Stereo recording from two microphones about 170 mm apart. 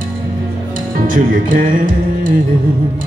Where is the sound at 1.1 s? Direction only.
50° right (ahead or behind).